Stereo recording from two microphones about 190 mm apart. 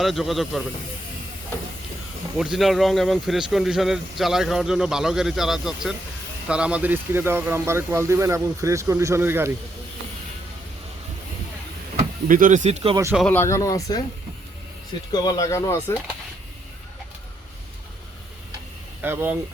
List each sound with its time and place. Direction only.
0.0 s speech: centre (ahead or behind)
2.4 s a man's voice: centre (ahead or behind)
12.3 s speech: 45° right (ahead or behind)
13.1 s speech: 10° left (ahead or behind)
15.1 s speech: 20° left (ahead or behind)
19.0 s a man's voice: 10° right (ahead or behind)